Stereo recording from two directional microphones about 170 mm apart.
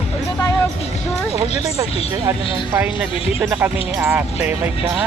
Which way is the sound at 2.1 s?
15° right (ahead or behind).